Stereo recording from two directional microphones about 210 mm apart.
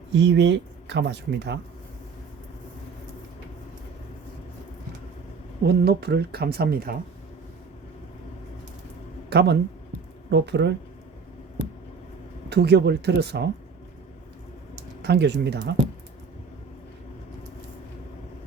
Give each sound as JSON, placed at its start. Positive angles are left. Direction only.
{"t": 0.1, "sound": "speech", "side_deg": -55}
{"t": 5.6, "sound": "speech", "side_deg": -50}
{"t": 9.3, "sound": "speech", "side_deg": -50}
{"t": 12.5, "sound": "speech", "side_deg": -50}
{"t": 15.0, "sound": "speech", "side_deg": -55}